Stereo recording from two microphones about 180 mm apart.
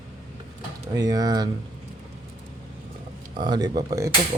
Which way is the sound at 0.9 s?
20° right (ahead or behind).